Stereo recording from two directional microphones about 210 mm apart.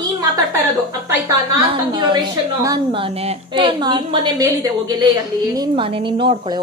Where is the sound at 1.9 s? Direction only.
20° right (ahead or behind).